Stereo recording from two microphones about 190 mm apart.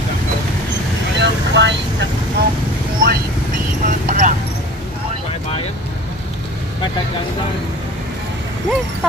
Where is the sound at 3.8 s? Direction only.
40° right (ahead or behind).